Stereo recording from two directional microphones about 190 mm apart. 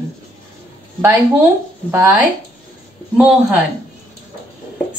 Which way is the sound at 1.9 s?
10° right (ahead or behind).